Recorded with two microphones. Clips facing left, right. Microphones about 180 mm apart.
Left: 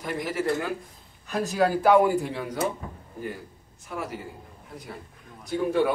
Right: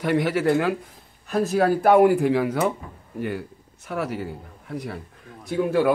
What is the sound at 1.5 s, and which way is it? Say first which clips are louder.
Speech: right 2 dB; 55° right (ahead or behind).